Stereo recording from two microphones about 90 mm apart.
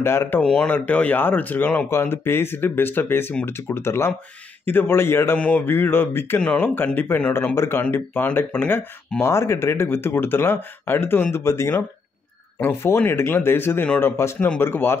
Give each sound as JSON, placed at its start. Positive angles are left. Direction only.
{"t": 0.0, "sound": "speech", "side_deg": 25}
{"t": 0.4, "sound": "speech", "side_deg": 10}
{"t": 7.3, "sound": "speech", "side_deg": 30}